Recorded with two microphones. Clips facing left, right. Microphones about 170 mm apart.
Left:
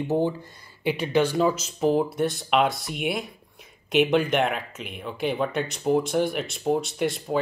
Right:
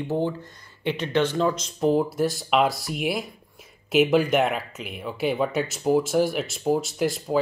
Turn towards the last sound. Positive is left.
turn(degrees=0)  # may be behind; listen again after turning